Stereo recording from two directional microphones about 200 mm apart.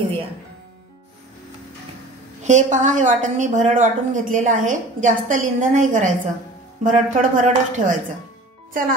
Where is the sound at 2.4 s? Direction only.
35° right (ahead or behind).